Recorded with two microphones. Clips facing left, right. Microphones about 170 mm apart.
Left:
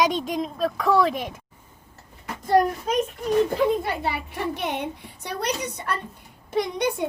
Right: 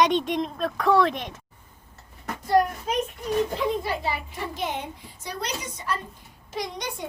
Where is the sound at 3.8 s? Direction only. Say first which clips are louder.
Left 1 dB; 60° left (ahead or behind).